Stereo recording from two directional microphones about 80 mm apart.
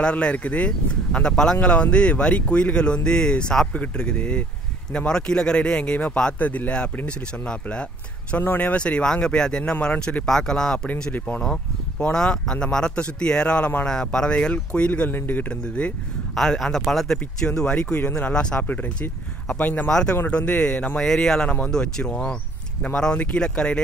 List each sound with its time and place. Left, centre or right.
0.0 s speech: centre
11.4 s speech: centre
16.3 s speech: centre; by 19.9 s left
19.9 s speech: centre